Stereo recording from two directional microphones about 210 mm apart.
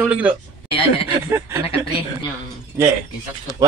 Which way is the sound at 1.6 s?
25° left (ahead or behind).